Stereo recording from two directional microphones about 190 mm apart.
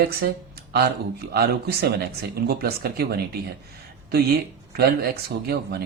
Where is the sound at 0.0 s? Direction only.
55° right (ahead or behind).